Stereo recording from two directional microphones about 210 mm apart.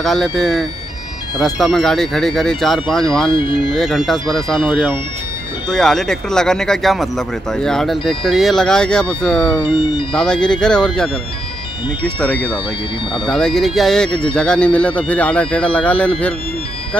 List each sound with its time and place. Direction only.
0.0 s speech: centre (ahead or behind)
3.3 s speech: 25° left (ahead or behind)
3.7 s speech: centre (ahead or behind)
9.6 s speech: 20° left (ahead or behind)
10.1 s speech: 5° left (ahead or behind)
13.3 s speech: centre (ahead or behind)